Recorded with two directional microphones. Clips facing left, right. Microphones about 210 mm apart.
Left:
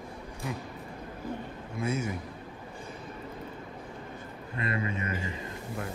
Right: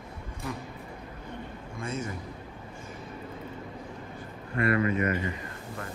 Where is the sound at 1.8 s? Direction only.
10° left (ahead or behind).